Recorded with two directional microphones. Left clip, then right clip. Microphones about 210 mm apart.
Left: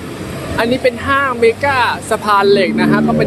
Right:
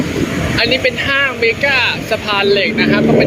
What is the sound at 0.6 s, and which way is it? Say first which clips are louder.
Speech: even; 10° left (ahead or behind).